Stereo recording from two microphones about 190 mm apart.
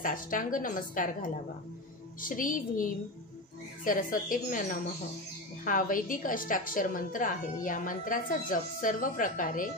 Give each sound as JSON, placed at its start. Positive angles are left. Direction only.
{"t": 0.0, "sound": "a woman's voice", "side_deg": 45}
{"t": 2.2, "sound": "a woman's voice", "side_deg": 45}